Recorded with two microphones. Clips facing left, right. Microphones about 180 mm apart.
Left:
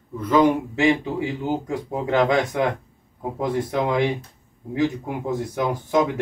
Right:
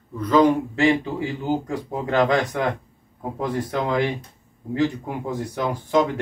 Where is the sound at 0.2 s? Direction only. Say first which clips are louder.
Right 1 dB; 10° left (ahead or behind).